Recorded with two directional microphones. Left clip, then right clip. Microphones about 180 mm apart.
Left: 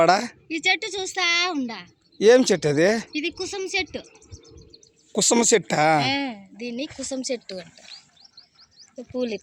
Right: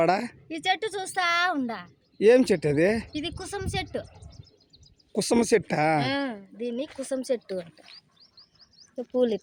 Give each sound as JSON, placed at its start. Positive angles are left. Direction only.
{"t": 0.0, "sound": "speech", "side_deg": 0}
{"t": 0.4, "sound": "a woman's voice", "side_deg": -30}
{"t": 2.1, "sound": "speech", "side_deg": 0}
{"t": 3.2, "sound": "speech", "side_deg": -25}
{"t": 5.1, "sound": "speech", "side_deg": 0}
{"t": 6.1, "sound": "speech", "side_deg": -30}
{"t": 8.2, "sound": "chirp", "side_deg": -35}
{"t": 9.0, "sound": "speech", "side_deg": -75}